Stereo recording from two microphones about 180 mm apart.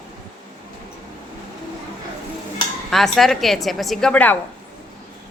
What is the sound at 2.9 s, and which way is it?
A woman's voice, centre (ahead or behind).